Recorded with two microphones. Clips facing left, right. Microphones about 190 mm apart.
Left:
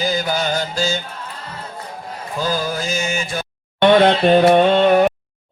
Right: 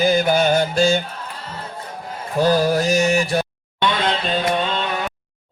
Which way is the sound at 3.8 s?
55° left (ahead or behind).